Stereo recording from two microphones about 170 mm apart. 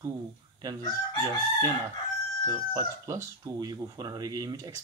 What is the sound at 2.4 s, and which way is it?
Speech, 20° right (ahead or behind).